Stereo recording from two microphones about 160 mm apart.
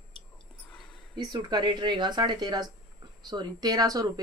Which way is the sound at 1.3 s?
25° right (ahead or behind).